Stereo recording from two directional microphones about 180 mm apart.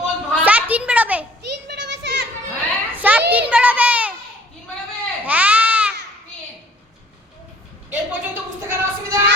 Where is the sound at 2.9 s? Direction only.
10° right (ahead or behind).